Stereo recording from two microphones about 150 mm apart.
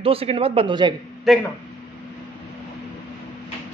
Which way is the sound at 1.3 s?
Centre (ahead or behind).